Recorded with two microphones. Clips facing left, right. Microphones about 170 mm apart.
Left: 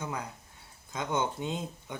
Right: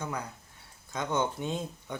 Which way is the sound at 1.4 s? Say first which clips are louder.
Right 1 dB; 15° left (ahead or behind).